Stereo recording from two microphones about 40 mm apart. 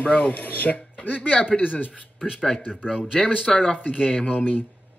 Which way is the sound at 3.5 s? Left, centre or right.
Centre.